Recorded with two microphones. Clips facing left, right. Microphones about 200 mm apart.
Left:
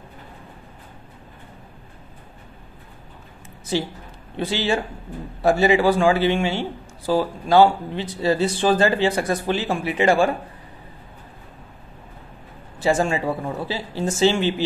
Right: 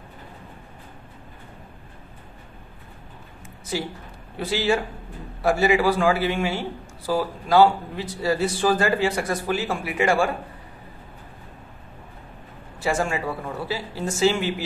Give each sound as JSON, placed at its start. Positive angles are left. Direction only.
{"t": 4.4, "sound": "speech", "side_deg": 20}
{"t": 12.8, "sound": "speech", "side_deg": 30}